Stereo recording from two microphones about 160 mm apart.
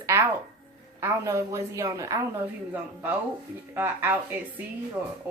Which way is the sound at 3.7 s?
15° right (ahead or behind).